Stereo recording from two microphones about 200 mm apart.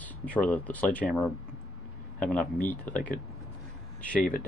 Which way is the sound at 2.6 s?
10° left (ahead or behind).